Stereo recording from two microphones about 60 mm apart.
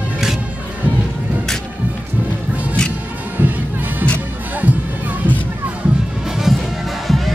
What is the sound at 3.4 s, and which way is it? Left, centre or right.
Music, right.